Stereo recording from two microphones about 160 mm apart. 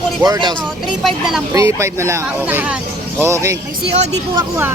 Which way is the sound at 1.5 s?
20° right (ahead or behind).